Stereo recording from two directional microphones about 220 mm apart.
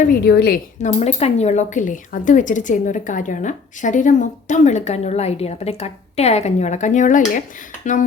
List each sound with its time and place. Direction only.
0.1 s speech: 45° left (ahead or behind)